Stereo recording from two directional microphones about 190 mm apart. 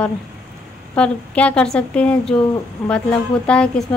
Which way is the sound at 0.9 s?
5° left (ahead or behind).